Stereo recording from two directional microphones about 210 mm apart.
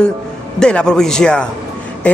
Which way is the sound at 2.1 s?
5° left (ahead or behind).